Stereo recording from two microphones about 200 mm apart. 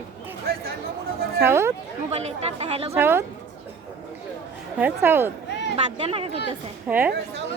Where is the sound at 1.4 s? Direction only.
15° right (ahead or behind).